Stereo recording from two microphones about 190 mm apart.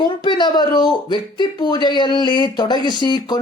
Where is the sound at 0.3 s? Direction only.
25° left (ahead or behind).